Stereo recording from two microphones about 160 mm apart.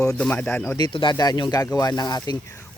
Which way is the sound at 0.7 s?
30° left (ahead or behind).